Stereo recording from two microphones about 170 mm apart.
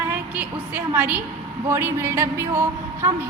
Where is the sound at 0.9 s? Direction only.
10° right (ahead or behind).